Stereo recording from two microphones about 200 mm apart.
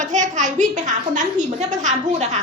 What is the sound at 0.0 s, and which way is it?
A woman's voice, 40° right (ahead or behind).